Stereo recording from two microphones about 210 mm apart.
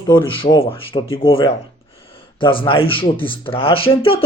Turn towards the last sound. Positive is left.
turn(degrees=25)  # may be behind; listen again after turning